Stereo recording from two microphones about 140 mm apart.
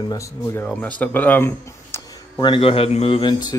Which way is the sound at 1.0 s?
10° left (ahead or behind).